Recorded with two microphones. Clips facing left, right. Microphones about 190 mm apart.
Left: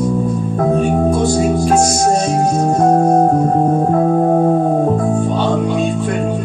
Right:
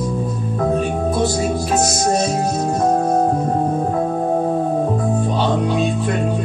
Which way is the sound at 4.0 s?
45° left (ahead or behind).